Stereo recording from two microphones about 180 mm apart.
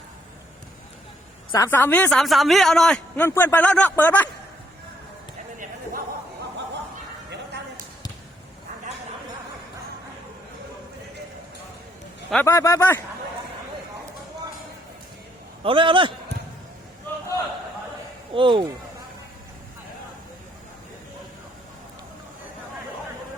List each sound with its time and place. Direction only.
1.5 s speech: 15° left (ahead or behind)
12.3 s speech: 10° left (ahead or behind)
15.6 s a man's voice: 30° right (ahead or behind)
18.3 s a man's voice: 25° right (ahead or behind)